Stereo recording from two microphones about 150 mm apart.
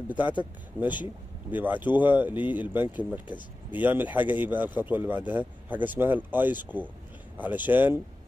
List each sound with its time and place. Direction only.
0.1 s speech: 10° right (ahead or behind)
0.8 s speech: 30° left (ahead or behind)
1.5 s speech: 10° right (ahead or behind)